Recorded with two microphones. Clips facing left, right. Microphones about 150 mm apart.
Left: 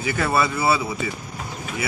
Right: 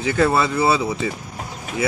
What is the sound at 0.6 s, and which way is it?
Speech, 15° right (ahead or behind).